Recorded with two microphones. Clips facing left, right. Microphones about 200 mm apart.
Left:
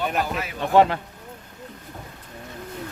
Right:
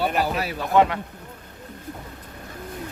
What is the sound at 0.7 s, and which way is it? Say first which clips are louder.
Speech: left 2 dB; 30° left (ahead or behind).